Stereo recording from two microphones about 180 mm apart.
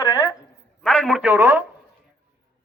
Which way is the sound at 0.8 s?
5° left (ahead or behind).